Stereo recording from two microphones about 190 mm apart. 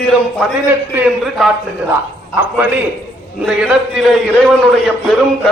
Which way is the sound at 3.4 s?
Centre (ahead or behind).